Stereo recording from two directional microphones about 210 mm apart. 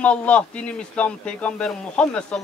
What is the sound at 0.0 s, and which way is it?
A man's voice, 5° left (ahead or behind).